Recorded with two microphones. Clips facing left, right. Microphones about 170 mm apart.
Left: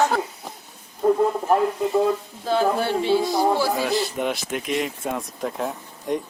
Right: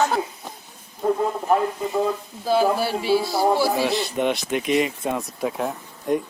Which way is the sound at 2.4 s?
10° right (ahead or behind).